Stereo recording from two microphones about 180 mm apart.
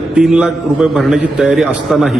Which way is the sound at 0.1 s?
5° right (ahead or behind).